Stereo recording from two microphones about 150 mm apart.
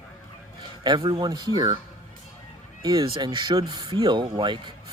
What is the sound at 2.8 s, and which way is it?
Speech, 25° right (ahead or behind).